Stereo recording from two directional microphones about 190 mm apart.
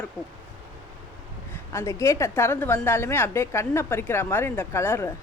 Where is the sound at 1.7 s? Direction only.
15° left (ahead or behind).